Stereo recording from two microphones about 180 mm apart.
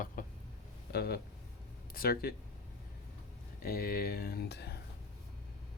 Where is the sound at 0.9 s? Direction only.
60° left (ahead or behind).